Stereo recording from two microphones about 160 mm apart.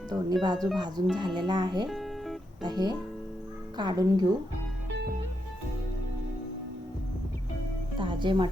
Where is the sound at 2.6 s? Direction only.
25° right (ahead or behind).